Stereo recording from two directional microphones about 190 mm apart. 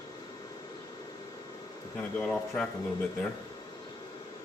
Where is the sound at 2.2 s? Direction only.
5° left (ahead or behind).